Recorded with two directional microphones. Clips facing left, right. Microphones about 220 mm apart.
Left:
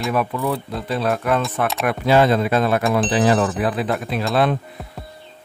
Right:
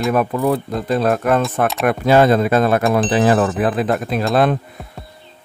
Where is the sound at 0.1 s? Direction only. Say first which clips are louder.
Right 4 dB; 45° right (ahead or behind).